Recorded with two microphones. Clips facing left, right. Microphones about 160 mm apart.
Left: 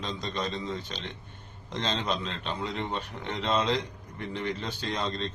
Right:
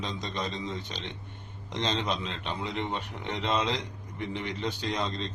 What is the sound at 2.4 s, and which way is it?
Speech, 15° right (ahead or behind).